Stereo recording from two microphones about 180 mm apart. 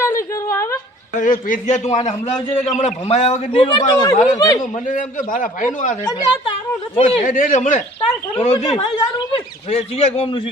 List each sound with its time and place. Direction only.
0.4 s a sound: 15° left (ahead or behind)
1.2 s a man's voice: 45° left (ahead or behind); by 4.6 s 20° left (ahead or behind)
4.9 s a man's voice: 50° left (ahead or behind)
6.1 s speech: 20° left (ahead or behind)
6.9 s a man's voice: 35° left (ahead or behind)
7.3 s a man's voice: 45° left (ahead or behind)
8.5 s speech: 20° left (ahead or behind)
9.6 s a man's voice: 35° left (ahead or behind)